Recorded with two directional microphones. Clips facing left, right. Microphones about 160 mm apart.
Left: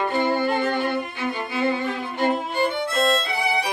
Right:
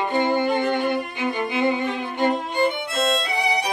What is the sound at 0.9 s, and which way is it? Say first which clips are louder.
Music: right 2 dB; 15° right (ahead or behind).